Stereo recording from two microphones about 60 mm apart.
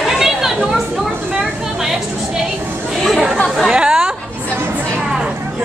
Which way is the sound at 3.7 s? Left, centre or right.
Centre.